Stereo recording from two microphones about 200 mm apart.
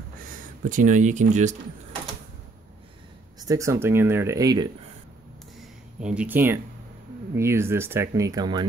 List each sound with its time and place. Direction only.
0.7 s speech: 40° right (ahead or behind)
3.3 s speech: 15° right (ahead or behind)
6.1 s speech: 10° right (ahead or behind)